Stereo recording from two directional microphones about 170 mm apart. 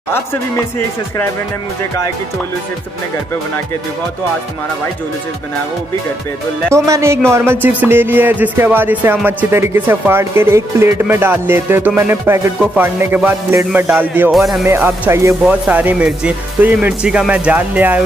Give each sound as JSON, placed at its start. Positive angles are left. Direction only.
{"t": 6.7, "sound": "speech", "side_deg": -15}
{"t": 14.6, "sound": "speech", "side_deg": -15}